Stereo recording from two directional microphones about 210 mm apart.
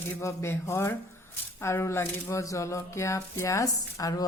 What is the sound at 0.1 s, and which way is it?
Speech, 15° left (ahead or behind).